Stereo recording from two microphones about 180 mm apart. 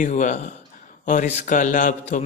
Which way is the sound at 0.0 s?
40° left (ahead or behind).